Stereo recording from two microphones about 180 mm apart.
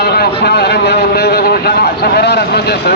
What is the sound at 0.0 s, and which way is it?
Vehicle, 65° left (ahead or behind).